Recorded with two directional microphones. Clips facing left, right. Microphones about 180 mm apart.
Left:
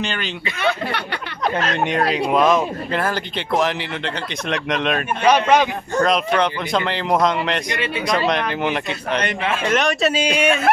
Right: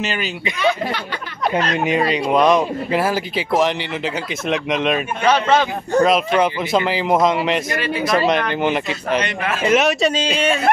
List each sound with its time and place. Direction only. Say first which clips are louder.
0.0 s speech: right 2 dB; 5° right (ahead or behind)
0.6 s speech: right 2 dB; 60° left (ahead or behind)
1.6 s speech: right 2 dB; centre (ahead or behind)
5.2 s speech: left 1 dB; 15° left (ahead or behind)
6.0 s speech: even; 5° right (ahead or behind)
10.1 s speech: left 1 dB; 10° left (ahead or behind)